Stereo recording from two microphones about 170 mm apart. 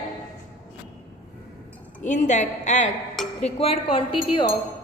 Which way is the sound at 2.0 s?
45° left (ahead or behind).